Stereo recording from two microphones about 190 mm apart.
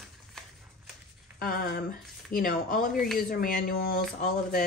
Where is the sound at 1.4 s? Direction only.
50° left (ahead or behind).